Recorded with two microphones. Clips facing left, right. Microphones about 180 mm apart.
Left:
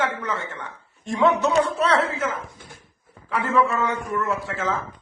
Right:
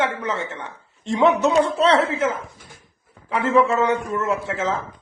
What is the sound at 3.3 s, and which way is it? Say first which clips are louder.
A man's voice: right 4 dB; 25° right (ahead or behind).